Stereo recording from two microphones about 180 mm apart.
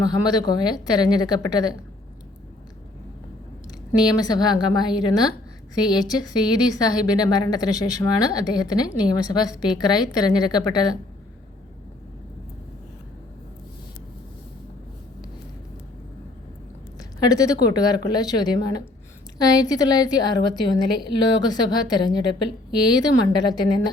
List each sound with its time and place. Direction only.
0.0 s a woman's voice: 20° left (ahead or behind)
3.7 s a woman's voice: 20° left (ahead or behind)
17.0 s a woman's voice: 20° left (ahead or behind)